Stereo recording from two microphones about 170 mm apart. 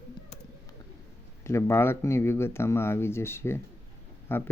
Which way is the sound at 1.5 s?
15° left (ahead or behind).